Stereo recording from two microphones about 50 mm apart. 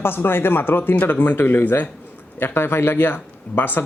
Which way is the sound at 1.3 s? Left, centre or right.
Left.